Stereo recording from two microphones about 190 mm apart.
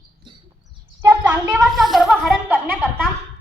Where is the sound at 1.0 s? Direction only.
10° right (ahead or behind).